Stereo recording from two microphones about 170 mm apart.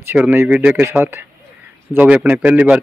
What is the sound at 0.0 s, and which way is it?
A man's voice, 10° right (ahead or behind).